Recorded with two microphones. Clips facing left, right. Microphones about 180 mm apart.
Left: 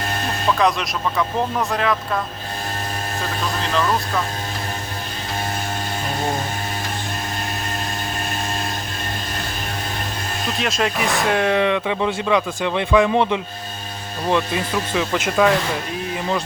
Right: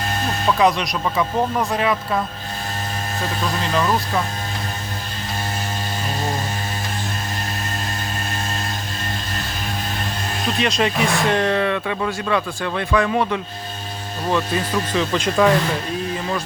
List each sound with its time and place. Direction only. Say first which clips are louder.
0.6 s speech: right 3 dB; centre (ahead or behind)
10.6 s speech: right 2 dB; centre (ahead or behind)